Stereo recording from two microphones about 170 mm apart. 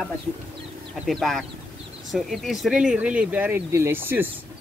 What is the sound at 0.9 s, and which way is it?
Speech, centre (ahead or behind).